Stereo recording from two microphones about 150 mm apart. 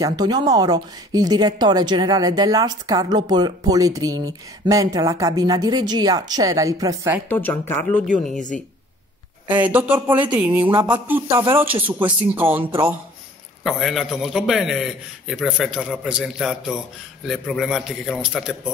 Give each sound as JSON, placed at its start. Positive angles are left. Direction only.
{"t": 0.0, "sound": "speech", "side_deg": -25}
{"t": 7.2, "sound": "speech", "side_deg": 15}
{"t": 9.5, "sound": "speech", "side_deg": -10}
{"t": 10.6, "sound": "speech", "side_deg": -35}
{"t": 11.1, "sound": "speech", "side_deg": -15}
{"t": 13.7, "sound": "a man's voice", "side_deg": 0}